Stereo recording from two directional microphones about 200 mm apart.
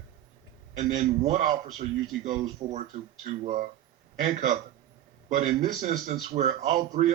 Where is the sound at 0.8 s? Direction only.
35° right (ahead or behind).